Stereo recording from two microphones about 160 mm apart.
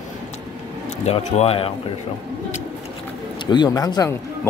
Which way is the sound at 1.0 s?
40° left (ahead or behind).